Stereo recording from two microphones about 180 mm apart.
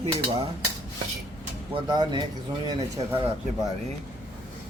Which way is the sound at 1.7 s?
25° right (ahead or behind).